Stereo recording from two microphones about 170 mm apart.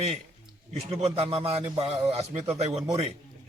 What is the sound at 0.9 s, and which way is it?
A man's voice, 35° right (ahead or behind).